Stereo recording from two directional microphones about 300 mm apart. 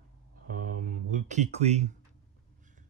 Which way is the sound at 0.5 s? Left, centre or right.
Right.